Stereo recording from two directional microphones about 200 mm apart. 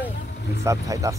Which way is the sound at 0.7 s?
15° right (ahead or behind).